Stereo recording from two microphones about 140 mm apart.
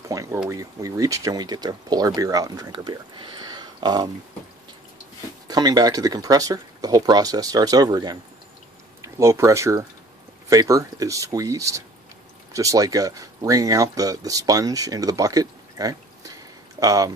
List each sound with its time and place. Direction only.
0.1 s a sound: 20° right (ahead or behind)
0.5 s speech: 25° right (ahead or behind)
5.5 s speech: 30° right (ahead or behind)